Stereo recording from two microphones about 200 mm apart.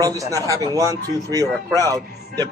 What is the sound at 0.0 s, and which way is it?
Speech, 15° right (ahead or behind).